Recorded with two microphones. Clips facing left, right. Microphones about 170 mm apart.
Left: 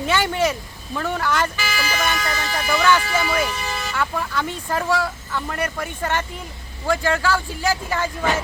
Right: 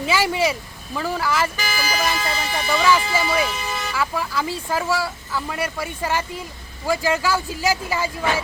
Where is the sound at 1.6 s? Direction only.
35° right (ahead or behind).